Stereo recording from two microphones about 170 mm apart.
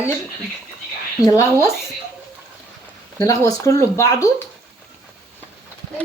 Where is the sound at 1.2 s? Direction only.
20° left (ahead or behind).